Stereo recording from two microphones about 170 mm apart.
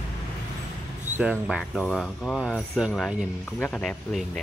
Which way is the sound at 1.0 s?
10° right (ahead or behind).